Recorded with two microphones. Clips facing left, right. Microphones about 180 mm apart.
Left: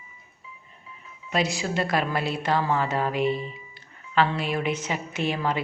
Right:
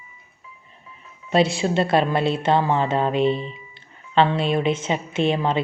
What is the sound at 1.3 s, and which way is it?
A woman's voice, 30° right (ahead or behind).